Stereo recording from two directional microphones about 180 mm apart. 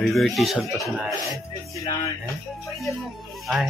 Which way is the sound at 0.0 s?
Centre (ahead or behind).